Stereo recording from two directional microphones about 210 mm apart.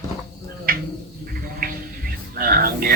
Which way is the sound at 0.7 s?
45° right (ahead or behind).